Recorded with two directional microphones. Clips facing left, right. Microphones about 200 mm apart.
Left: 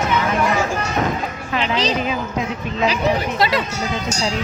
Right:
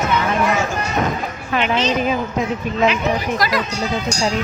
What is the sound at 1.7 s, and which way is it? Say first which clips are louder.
Speech: right 1 dB; 35° left (ahead or behind).